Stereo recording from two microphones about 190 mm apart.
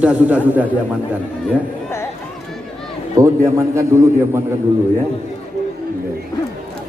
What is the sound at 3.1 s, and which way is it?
A man's voice, 15° right (ahead or behind).